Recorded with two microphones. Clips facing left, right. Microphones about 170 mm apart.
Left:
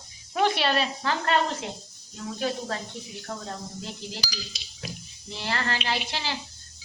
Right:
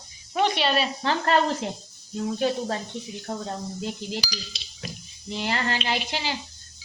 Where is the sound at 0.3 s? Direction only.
Centre (ahead or behind).